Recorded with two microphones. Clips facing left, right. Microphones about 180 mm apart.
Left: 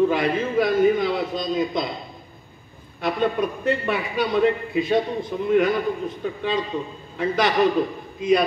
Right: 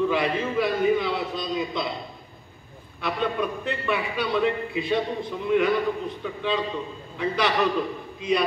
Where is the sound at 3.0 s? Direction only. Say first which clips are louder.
Left 4 dB; 45° left (ahead or behind).